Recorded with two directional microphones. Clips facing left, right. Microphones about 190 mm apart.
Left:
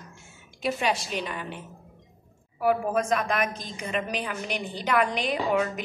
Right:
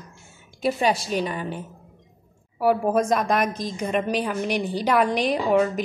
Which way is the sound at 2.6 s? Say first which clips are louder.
Right 4 dB; 35° right (ahead or behind).